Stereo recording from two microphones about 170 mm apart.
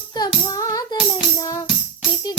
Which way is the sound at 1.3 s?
20° left (ahead or behind).